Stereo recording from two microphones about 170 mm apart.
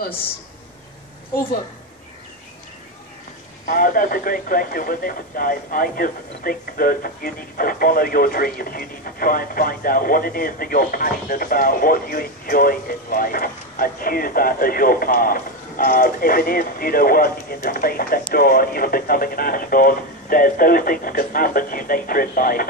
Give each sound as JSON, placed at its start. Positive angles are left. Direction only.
{"t": 3.6, "sound": "speech", "side_deg": 55}